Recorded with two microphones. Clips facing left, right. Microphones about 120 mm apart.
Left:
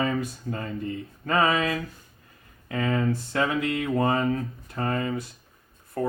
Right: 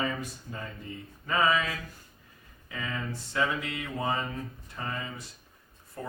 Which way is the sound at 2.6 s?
60° left (ahead or behind).